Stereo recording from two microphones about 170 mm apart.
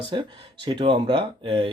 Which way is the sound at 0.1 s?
30° right (ahead or behind).